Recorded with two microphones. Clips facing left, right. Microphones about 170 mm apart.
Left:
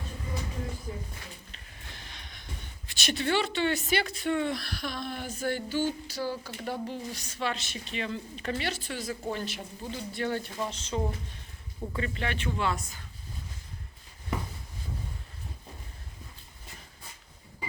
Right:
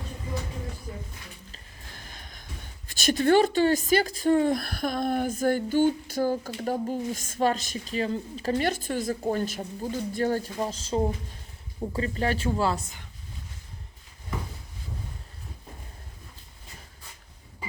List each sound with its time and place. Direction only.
2.0 s speech: 45° right (ahead or behind)